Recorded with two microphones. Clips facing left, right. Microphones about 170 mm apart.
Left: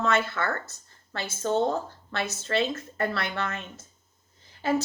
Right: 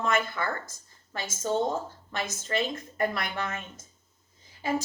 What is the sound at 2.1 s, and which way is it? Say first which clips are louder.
A woman's voice: left 3 dB; 15° right (ahead or behind).